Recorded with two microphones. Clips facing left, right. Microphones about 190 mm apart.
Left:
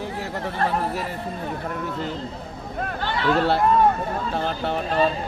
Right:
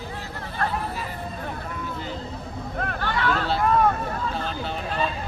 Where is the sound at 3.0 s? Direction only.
25° left (ahead or behind).